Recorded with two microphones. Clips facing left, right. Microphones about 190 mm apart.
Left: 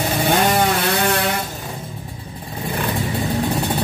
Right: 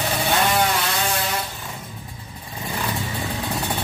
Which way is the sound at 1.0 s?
60° left (ahead or behind).